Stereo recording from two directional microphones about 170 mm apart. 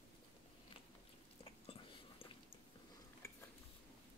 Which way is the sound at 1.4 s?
35° left (ahead or behind).